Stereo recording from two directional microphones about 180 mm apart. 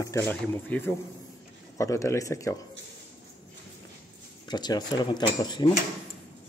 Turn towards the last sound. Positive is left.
turn(degrees=25)  # may be behind; listen again after turning